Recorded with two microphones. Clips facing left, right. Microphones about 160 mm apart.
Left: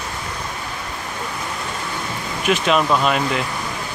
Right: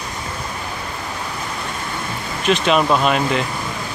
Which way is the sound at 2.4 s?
5° left (ahead or behind).